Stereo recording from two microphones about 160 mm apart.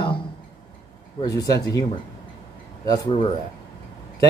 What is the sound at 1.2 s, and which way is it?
Speech, 20° left (ahead or behind).